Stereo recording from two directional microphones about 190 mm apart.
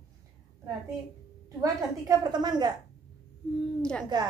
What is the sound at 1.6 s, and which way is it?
A woman's voice, 20° right (ahead or behind).